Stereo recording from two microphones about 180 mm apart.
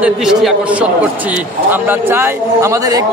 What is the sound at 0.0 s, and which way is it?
A man's voice, 5° right (ahead or behind).